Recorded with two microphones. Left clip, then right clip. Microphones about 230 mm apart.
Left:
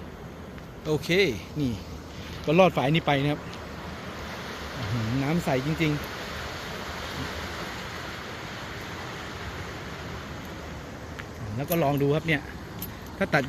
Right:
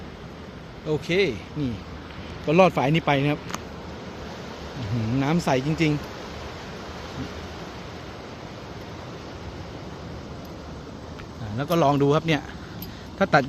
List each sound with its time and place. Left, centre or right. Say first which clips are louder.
0.9 s speech: right 1 dB; centre
5.2 s speech: right 4 dB; centre
11.7 s speech: right 5 dB; centre